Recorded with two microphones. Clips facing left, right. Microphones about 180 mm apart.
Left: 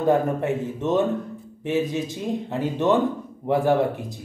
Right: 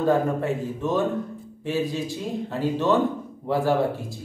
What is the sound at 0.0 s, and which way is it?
Speech, 20° left (ahead or behind).